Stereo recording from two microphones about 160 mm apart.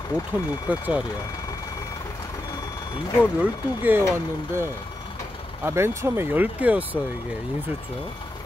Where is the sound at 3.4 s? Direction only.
10° right (ahead or behind).